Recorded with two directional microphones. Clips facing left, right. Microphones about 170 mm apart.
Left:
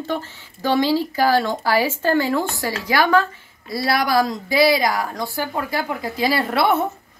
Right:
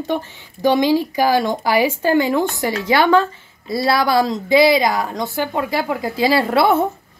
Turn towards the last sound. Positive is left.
turn(degrees=-25)  # may be behind; listen again after turning